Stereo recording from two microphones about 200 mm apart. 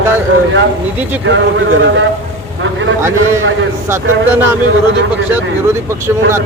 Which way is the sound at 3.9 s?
10° right (ahead or behind).